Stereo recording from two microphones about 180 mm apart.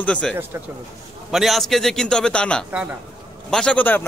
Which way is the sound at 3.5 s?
5° left (ahead or behind).